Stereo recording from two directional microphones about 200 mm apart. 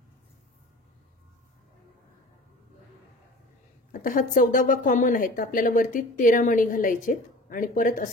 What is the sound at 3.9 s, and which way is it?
Speech, 45° left (ahead or behind).